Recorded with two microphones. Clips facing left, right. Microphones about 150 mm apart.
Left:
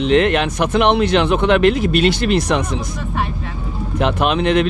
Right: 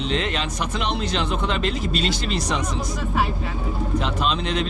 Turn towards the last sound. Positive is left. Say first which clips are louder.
# left 8 dB
turn(degrees=65)  # may be behind; listen again after turning